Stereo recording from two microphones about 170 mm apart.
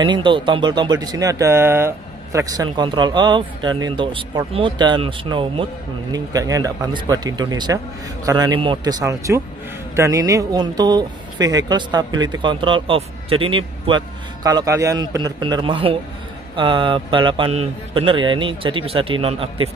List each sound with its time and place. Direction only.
0.0 s speech: 25° right (ahead or behind)
6.1 s a man's voice: 20° right (ahead or behind)